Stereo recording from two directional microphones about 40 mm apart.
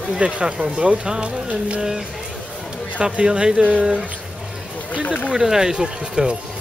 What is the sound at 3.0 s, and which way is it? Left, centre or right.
Music, right.